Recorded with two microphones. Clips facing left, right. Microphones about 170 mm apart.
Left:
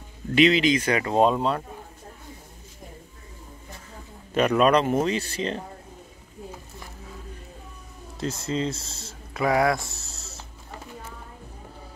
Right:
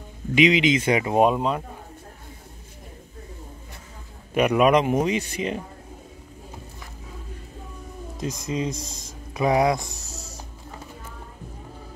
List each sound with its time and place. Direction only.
0.3 s speech: 15° right (ahead or behind)
4.3 s speech: 15° right (ahead or behind)
8.2 s speech: 15° right (ahead or behind)